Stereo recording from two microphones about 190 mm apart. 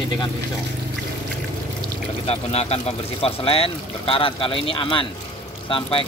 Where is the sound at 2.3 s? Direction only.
35° left (ahead or behind).